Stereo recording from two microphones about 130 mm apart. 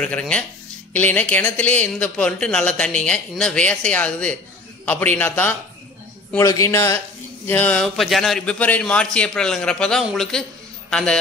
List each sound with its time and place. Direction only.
0.0 s speech: 10° left (ahead or behind)
6.3 s a man's voice: 25° left (ahead or behind); by 11.1 s 5° left (ahead or behind)